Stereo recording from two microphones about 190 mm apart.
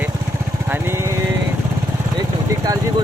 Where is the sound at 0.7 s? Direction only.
10° right (ahead or behind).